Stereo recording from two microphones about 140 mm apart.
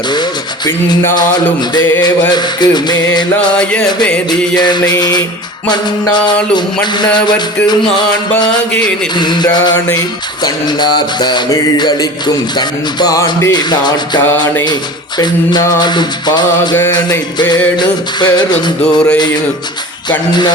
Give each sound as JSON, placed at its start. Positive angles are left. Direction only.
{"t": 0.1, "sound": "music", "side_deg": 30}
{"t": 2.3, "sound": "music", "side_deg": 30}
{"t": 3.6, "sound": "music", "side_deg": 5}
{"t": 4.5, "sound": "music", "side_deg": 30}
{"t": 15.8, "sound": "music", "side_deg": 30}